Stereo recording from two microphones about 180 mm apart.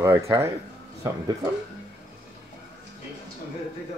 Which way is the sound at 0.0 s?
15° right (ahead or behind).